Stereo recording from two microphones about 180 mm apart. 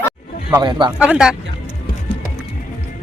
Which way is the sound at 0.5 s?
25° right (ahead or behind).